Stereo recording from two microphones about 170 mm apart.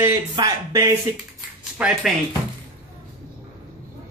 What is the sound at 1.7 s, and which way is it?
Speech, 5° right (ahead or behind).